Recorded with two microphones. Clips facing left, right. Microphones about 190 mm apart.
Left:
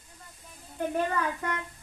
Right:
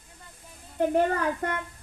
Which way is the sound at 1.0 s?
55° right (ahead or behind).